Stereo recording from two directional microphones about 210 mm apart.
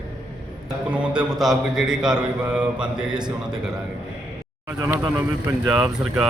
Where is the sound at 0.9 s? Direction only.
5° right (ahead or behind).